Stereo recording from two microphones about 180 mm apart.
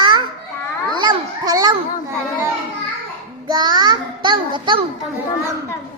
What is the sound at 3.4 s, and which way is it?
A child's voice, 25° right (ahead or behind).